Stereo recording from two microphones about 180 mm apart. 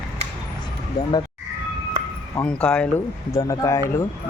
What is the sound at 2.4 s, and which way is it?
Speech, 5° left (ahead or behind).